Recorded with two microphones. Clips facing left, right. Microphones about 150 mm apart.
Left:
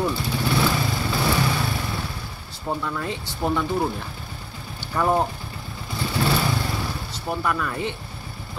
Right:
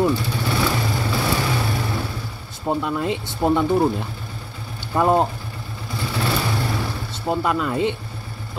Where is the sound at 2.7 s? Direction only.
20° right (ahead or behind).